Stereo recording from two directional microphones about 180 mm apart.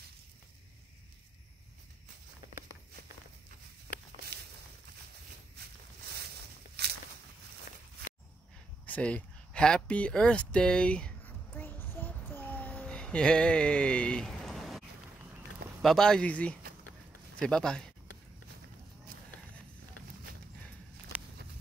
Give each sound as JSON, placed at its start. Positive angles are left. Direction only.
{"t": 6.8, "sound": "walk", "side_deg": -65}
{"t": 8.8, "sound": "a sound", "side_deg": 5}
{"t": 15.8, "sound": "speech", "side_deg": 0}